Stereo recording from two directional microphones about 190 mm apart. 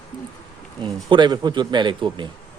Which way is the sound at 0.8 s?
25° right (ahead or behind).